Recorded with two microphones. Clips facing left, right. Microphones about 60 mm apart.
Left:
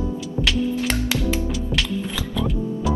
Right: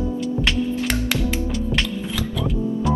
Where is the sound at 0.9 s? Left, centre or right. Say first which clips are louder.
Even; right.